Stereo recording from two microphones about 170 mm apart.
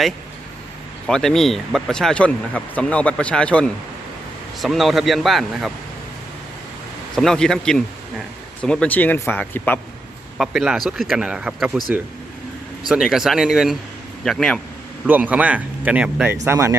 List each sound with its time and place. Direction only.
1.0 s speech: 5° left (ahead or behind)
7.2 s speech: 5° left (ahead or behind)
10.3 s speech: centre (ahead or behind)
12.9 s speech: 5° right (ahead or behind)
15.0 s speech: 10° right (ahead or behind)